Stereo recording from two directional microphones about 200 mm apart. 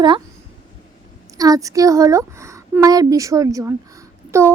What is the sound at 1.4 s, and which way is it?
A child's voice, 20° right (ahead or behind).